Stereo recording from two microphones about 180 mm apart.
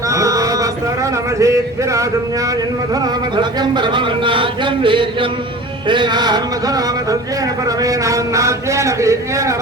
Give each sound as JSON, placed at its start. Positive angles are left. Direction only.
{"t": 0.1, "sound": "a sound", "side_deg": -15}
{"t": 1.4, "sound": "a man's voice", "side_deg": -15}
{"t": 3.3, "sound": "a man's voice", "side_deg": -25}
{"t": 7.8, "sound": "a man's voice", "side_deg": -20}